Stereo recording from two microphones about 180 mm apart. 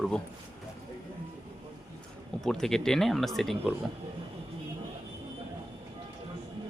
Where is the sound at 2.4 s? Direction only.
Centre (ahead or behind).